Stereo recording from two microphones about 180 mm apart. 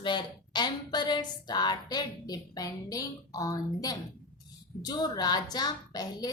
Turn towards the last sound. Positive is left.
turn(degrees=20)  # may be behind; listen again after turning